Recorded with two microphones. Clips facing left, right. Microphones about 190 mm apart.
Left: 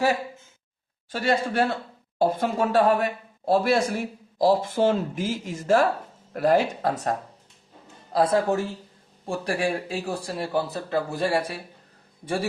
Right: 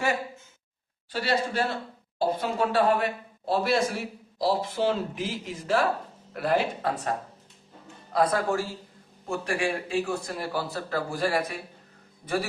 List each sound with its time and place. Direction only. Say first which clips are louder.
1.1 s a man's voice: left 3 dB; 50° left (ahead or behind)
8.1 s a man's voice: left 3 dB; 30° left (ahead or behind)